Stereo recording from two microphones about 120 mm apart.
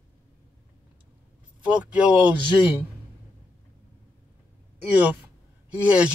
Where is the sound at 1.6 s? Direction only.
10° right (ahead or behind).